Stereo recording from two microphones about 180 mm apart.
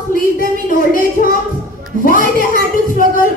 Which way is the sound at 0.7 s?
50° left (ahead or behind).